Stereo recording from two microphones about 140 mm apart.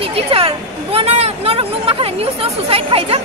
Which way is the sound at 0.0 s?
40° right (ahead or behind).